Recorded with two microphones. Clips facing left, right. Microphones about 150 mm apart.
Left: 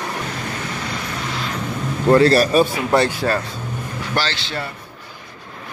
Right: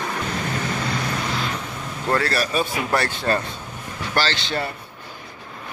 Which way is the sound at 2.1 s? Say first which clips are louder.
Left 9 dB; 25° left (ahead or behind).